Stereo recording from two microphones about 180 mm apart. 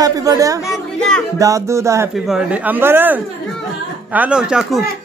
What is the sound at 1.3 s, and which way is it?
A man's voice, 15° right (ahead or behind).